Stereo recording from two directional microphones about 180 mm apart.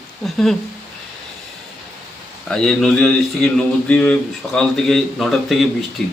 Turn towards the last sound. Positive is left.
turn(degrees=5)  # may be behind; listen again after turning